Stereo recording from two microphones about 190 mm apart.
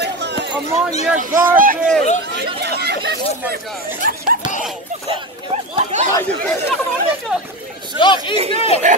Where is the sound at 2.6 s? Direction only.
60° right (ahead or behind).